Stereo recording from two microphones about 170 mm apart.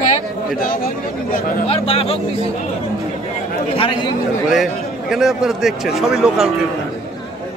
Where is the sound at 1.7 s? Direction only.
35° left (ahead or behind).